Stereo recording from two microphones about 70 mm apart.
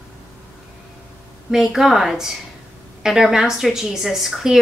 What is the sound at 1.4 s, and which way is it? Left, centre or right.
Speech, centre.